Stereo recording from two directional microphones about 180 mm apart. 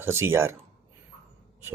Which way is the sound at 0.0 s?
15° right (ahead or behind).